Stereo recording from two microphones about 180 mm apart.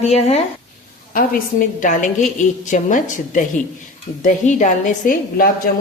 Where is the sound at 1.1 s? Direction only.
50° left (ahead or behind).